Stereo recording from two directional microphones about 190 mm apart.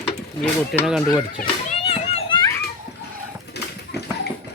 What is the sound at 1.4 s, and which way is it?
Children playing, 30° left (ahead or behind).